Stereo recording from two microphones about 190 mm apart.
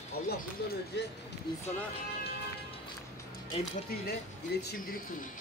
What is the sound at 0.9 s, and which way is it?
Speech, 65° left (ahead or behind).